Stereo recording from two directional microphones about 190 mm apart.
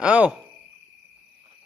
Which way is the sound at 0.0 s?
5° right (ahead or behind).